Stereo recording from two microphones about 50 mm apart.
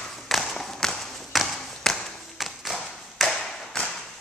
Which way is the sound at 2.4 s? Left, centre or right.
Centre.